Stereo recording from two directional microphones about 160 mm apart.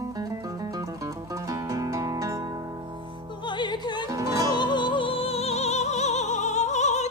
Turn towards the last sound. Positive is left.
turn(degrees=45)  # may be behind; listen again after turning